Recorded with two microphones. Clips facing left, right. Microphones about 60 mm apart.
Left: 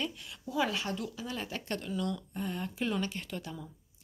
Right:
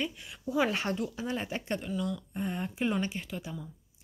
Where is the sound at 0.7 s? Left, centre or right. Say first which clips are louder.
Right 4 dB; right; by 2.2 s centre.